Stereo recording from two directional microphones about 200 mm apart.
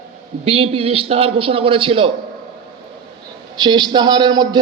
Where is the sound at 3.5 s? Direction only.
20° right (ahead or behind).